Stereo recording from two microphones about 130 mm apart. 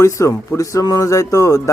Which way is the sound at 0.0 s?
25° left (ahead or behind).